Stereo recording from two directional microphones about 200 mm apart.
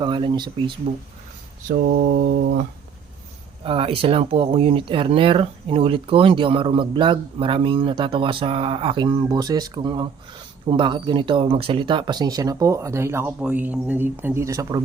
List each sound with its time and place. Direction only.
0.0 s speech: 25° right (ahead or behind)
1.6 s mantra: 45° right (ahead or behind)
3.6 s speech: 25° right (ahead or behind)